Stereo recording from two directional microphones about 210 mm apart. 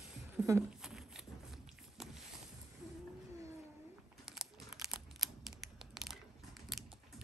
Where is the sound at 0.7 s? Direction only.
Centre (ahead or behind).